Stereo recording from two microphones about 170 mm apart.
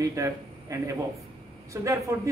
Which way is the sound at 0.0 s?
20° right (ahead or behind).